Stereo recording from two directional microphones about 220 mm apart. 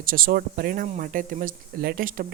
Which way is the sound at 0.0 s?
40° right (ahead or behind).